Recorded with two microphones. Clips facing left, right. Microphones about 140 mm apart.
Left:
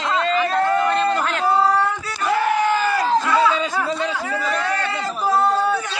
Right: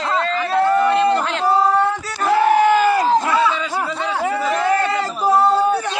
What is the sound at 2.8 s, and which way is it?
Crowd, 25° right (ahead or behind).